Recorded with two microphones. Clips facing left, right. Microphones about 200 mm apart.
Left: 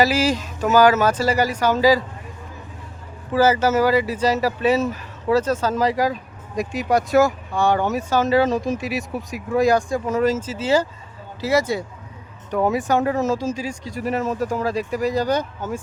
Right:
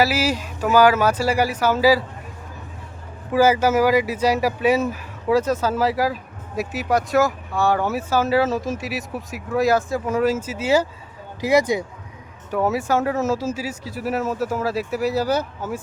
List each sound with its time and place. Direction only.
0.0 s speech: 10° right (ahead or behind)
3.3 s speech: 10° right (ahead or behind)
12.5 s speech: centre (ahead or behind)